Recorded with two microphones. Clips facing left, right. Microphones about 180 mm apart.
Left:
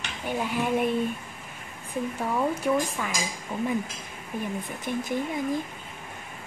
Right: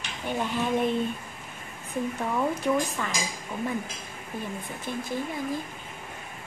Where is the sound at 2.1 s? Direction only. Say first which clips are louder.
Left 2 dB; 5° left (ahead or behind).